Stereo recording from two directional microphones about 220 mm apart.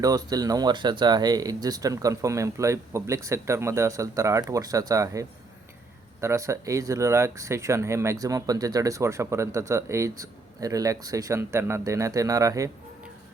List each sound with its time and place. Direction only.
0.0 s speech: 15° right (ahead or behind)